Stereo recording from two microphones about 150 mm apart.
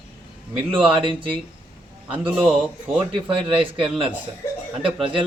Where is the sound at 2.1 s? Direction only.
5° right (ahead or behind).